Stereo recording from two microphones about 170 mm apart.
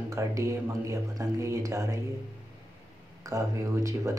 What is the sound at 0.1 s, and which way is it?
Speech, 20° right (ahead or behind).